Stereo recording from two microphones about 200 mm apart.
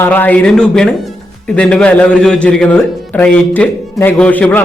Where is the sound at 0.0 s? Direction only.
10° left (ahead or behind).